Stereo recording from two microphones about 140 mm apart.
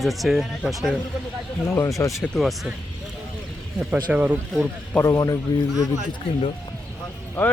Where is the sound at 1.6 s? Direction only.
20° left (ahead or behind).